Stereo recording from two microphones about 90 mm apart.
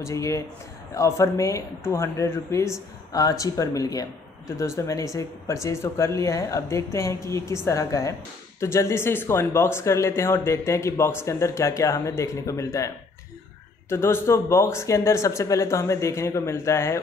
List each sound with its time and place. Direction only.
0.0 s speech: 35° left (ahead or behind)
3.1 s speech: 45° left (ahead or behind)